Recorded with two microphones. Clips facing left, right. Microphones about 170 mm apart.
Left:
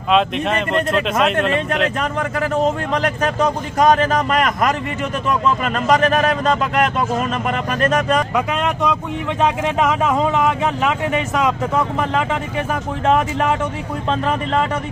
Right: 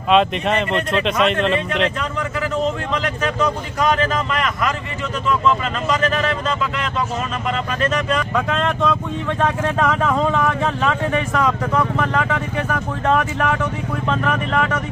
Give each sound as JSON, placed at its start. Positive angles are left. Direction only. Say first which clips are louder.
{"t": 0.1, "sound": "speech", "louder": "right 1 dB", "side_deg": 0}
{"t": 2.9, "sound": "a man's voice", "louder": "left 3 dB", "side_deg": 45}
{"t": 8.4, "sound": "speech", "louder": "even", "side_deg": 10}